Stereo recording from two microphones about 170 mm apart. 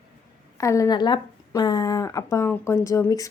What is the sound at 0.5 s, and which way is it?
Speech, 20° left (ahead or behind).